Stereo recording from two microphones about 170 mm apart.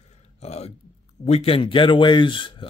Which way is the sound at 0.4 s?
40° left (ahead or behind).